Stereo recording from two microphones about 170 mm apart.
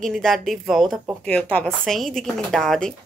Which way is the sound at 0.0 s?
Centre (ahead or behind).